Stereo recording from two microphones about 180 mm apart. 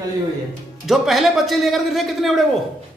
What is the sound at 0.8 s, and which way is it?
A man's voice, centre (ahead or behind).